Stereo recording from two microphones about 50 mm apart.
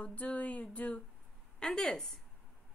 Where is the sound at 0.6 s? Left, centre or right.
Left.